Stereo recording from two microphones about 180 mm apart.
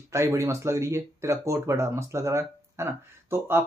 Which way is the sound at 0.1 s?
15° right (ahead or behind).